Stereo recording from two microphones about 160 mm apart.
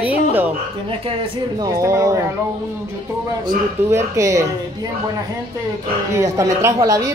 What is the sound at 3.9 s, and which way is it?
Speech, 20° right (ahead or behind).